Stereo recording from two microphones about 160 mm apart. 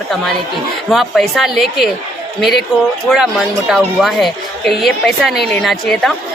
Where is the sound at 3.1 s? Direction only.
Centre (ahead or behind).